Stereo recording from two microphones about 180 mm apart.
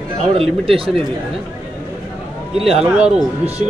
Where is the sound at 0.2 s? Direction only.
30° right (ahead or behind).